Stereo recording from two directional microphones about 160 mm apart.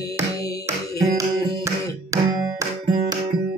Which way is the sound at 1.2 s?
20° right (ahead or behind).